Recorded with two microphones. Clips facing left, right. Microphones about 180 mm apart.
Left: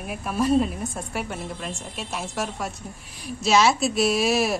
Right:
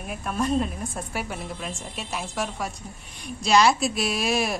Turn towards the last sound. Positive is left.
turn(degrees=0)  # may be behind; listen again after turning